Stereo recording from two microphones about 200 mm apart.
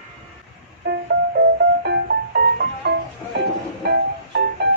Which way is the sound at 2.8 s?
50° right (ahead or behind).